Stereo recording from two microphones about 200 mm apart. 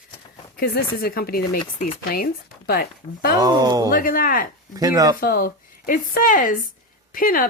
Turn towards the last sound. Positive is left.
turn(degrees=45)  # may be behind; listen again after turning